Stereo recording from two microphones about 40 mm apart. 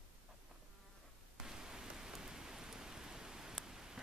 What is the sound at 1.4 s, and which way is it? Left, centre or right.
Rain, centre.